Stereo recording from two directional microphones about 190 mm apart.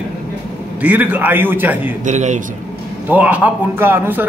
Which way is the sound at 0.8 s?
10° right (ahead or behind).